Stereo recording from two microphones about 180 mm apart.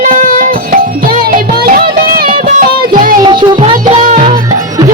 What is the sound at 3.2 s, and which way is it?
Music, 25° right (ahead or behind).